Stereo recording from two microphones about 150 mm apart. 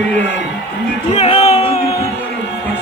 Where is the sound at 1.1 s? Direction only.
40° left (ahead or behind).